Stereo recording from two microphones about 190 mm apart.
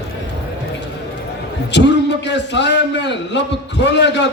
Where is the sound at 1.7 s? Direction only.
65° left (ahead or behind).